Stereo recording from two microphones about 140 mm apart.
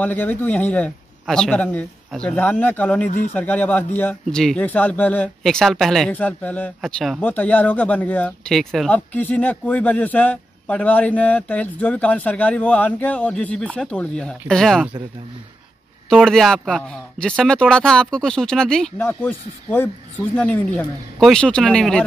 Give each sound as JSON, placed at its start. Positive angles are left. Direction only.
{"t": 0.0, "sound": "a man's voice", "side_deg": 15}
{"t": 3.1, "sound": "speech", "side_deg": 55}
{"t": 3.3, "sound": "a man's voice", "side_deg": 10}
{"t": 16.1, "sound": "a man's voice", "side_deg": 5}